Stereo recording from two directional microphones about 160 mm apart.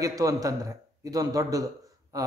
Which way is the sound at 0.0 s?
20° right (ahead or behind).